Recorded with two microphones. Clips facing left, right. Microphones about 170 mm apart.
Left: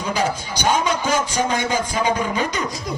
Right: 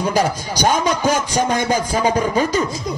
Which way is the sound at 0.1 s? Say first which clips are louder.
Right 3 dB; 40° right (ahead or behind).